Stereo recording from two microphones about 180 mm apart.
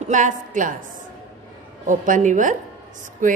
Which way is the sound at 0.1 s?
45° right (ahead or behind).